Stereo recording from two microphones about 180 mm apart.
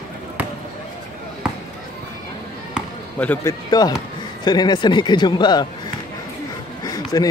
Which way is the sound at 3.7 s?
20° left (ahead or behind).